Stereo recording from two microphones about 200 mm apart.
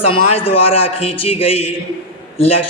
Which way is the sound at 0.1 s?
30° left (ahead or behind).